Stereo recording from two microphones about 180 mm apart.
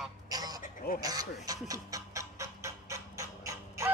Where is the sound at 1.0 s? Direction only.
20° right (ahead or behind).